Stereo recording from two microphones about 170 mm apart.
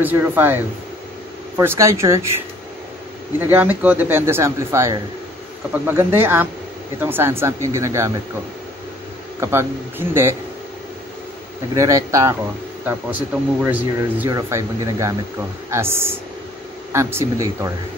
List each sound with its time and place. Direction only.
0.0 s speech: 10° right (ahead or behind)
1.6 s speech: 15° right (ahead or behind)
3.3 s speech: 10° right (ahead or behind)
9.4 s speech: 15° right (ahead or behind)
11.7 s speech: 20° right (ahead or behind)